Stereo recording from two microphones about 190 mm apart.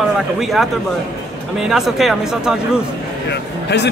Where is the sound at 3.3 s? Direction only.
65° left (ahead or behind).